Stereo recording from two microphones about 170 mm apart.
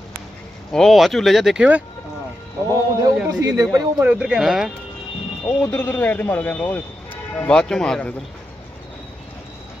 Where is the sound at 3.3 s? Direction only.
20° right (ahead or behind).